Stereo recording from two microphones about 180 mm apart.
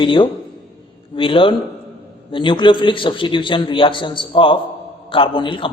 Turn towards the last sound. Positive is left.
turn(degrees=30)  # may be behind; listen again after turning